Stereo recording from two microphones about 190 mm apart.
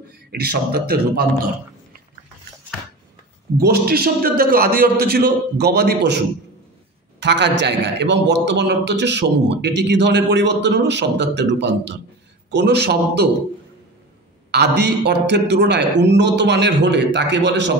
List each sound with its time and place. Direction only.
0.3 s a man's voice: 55° right (ahead or behind)
3.5 s a man's voice: 55° right (ahead or behind)
14.5 s a man's voice: 65° right (ahead or behind)